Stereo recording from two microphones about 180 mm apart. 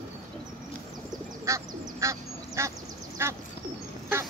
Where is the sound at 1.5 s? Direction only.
15° right (ahead or behind).